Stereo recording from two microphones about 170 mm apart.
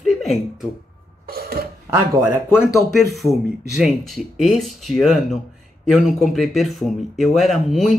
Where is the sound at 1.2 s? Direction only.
60° right (ahead or behind).